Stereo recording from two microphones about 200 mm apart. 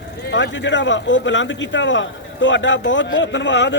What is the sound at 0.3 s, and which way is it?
A man's voice, 65° left (ahead or behind).